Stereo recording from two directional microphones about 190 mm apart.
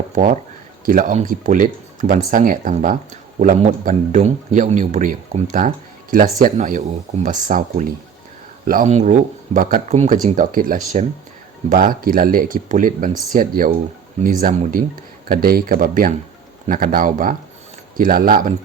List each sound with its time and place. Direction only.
0.1 s speech: 45° right (ahead or behind)